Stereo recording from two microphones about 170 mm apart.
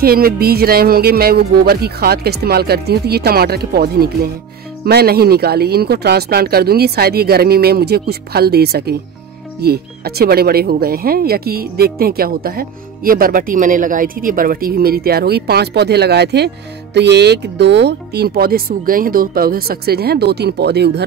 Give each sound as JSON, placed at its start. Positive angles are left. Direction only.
{"t": 0.0, "sound": "speech", "side_deg": -60}